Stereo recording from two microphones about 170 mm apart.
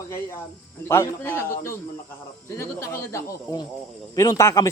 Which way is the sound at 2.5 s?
15° left (ahead or behind).